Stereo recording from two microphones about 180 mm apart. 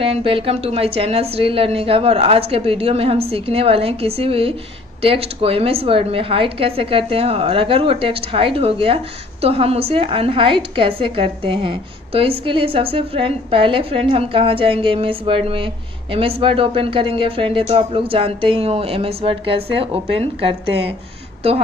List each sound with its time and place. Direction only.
0.0 s a woman's voice: 30° right (ahead or behind)